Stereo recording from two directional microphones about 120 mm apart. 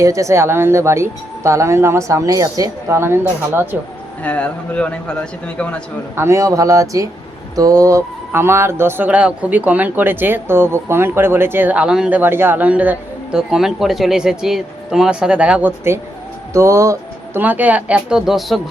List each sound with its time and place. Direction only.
0.0 s speech: 25° right (ahead or behind)
4.2 s a man's voice: 10° left (ahead or behind)
6.1 s speech: 25° right (ahead or behind)
16.5 s music: 25° right (ahead or behind)
17.4 s speech: 15° right (ahead or behind)